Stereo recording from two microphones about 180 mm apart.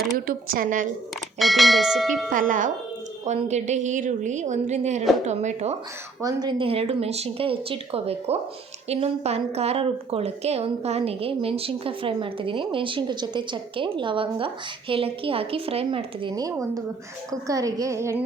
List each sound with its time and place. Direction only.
0.3 s a woman's voice: 50° right (ahead or behind)
1.4 s speech: centre (ahead or behind)
2.3 s a woman's voice: 50° right (ahead or behind)
6.2 s a woman's voice: 25° right (ahead or behind)